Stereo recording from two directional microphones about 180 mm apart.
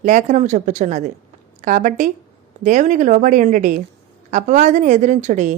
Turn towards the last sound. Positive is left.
turn(degrees=-40)  # may be behind; listen again after turning